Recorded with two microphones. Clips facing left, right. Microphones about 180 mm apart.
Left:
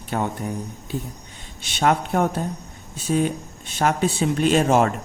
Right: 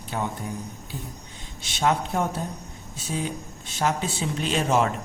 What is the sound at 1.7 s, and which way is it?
Speech, 60° left (ahead or behind).